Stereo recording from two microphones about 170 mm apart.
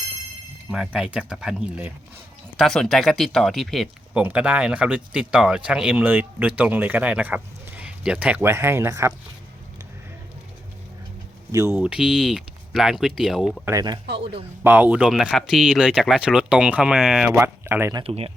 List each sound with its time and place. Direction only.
0.7 s speech: 5° right (ahead or behind)
11.5 s speech: 15° right (ahead or behind)
11.8 s speech: 5° right (ahead or behind)
13.7 s speech: 20° right (ahead or behind)
14.1 s speech: 90° right
14.6 s speech: 10° right (ahead or behind)
18.0 s speech: 35° right (ahead or behind)